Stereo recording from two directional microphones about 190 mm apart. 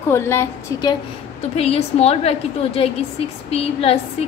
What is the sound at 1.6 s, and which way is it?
A woman's voice, 35° left (ahead or behind).